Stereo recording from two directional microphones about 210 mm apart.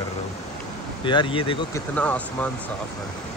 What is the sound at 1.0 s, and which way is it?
Speech, 25° left (ahead or behind).